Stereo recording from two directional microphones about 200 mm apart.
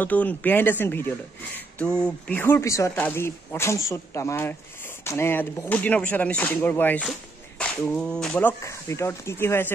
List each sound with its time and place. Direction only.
0.0 s speech: 10° left (ahead or behind)